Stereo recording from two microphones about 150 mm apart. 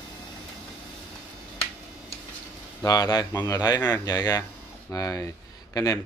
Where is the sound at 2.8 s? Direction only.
25° left (ahead or behind).